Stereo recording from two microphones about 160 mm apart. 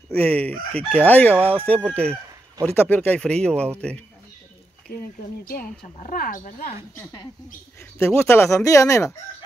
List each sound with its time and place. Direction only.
0.1 s crowing: 10° left (ahead or behind)
1.3 s speech: 10° right (ahead or behind)
1.7 s crowing: 5° left (ahead or behind)
5.4 s speech: 65° left (ahead or behind)
8.0 s speech: 15° left (ahead or behind)